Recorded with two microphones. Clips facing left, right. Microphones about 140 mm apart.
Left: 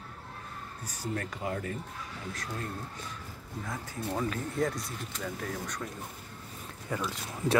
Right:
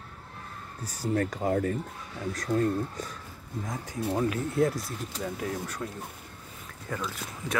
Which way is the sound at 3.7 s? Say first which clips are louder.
Right 4 dB; 15° right (ahead or behind).